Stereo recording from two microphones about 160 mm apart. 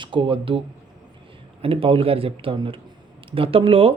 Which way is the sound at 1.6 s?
35° right (ahead or behind).